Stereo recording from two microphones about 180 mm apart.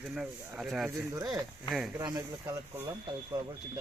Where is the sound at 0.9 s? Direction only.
15° right (ahead or behind).